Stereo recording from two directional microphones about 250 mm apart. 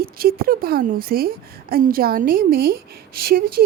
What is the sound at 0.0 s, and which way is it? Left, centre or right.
A woman's voice, right.